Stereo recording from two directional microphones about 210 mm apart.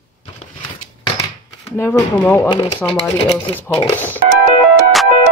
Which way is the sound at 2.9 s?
30° left (ahead or behind).